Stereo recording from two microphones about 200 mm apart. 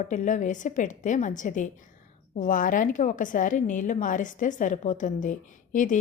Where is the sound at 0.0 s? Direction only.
40° left (ahead or behind).